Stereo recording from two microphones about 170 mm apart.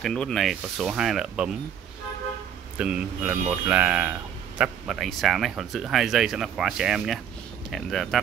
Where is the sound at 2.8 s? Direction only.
5° right (ahead or behind).